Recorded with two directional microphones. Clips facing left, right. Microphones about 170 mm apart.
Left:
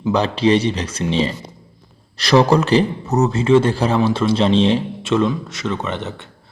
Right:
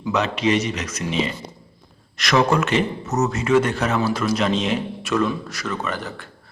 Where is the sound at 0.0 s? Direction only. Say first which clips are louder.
Left 4 dB; 30° left (ahead or behind).